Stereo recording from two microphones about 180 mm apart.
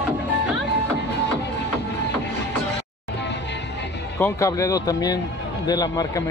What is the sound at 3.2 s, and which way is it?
Music, 75° left (ahead or behind).